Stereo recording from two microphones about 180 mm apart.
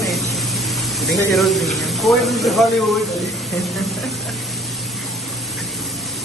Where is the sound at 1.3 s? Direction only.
Centre (ahead or behind).